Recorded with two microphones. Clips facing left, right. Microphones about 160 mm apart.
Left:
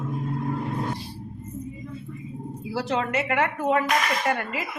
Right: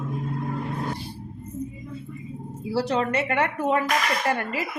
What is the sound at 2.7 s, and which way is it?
A woman's voice, 35° right (ahead or behind).